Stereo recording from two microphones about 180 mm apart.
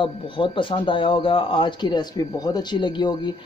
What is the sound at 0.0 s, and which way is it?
Speech, 30° left (ahead or behind).